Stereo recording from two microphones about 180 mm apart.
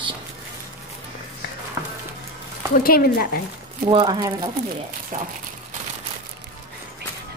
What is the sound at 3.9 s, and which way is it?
Speech, 25° right (ahead or behind).